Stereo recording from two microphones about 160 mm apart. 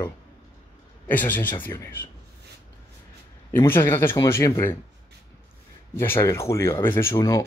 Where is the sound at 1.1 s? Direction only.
10° left (ahead or behind).